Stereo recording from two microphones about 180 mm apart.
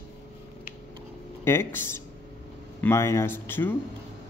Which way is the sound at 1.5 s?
15° left (ahead or behind).